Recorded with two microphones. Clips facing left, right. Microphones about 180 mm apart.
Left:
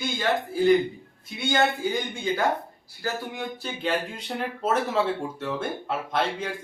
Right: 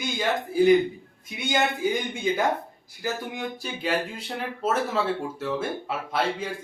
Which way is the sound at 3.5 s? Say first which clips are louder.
Even; 10° right (ahead or behind).